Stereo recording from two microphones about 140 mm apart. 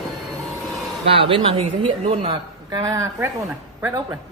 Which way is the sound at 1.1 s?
40° right (ahead or behind).